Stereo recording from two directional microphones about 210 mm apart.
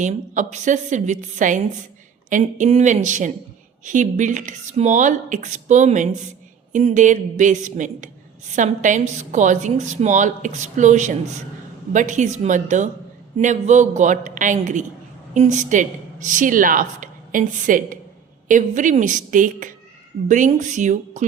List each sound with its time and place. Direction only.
0.0 s a woman's voice: 35° right (ahead or behind)